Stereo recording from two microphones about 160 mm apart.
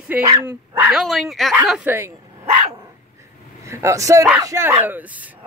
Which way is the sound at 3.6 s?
20° right (ahead or behind).